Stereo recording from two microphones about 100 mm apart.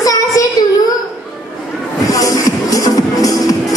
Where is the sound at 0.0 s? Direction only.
35° left (ahead or behind).